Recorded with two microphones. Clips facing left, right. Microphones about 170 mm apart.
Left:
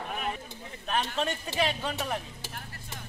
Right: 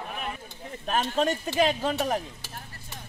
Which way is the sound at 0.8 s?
40° right (ahead or behind).